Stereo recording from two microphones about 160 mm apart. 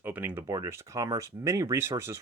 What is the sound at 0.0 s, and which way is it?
Speech, 10° right (ahead or behind).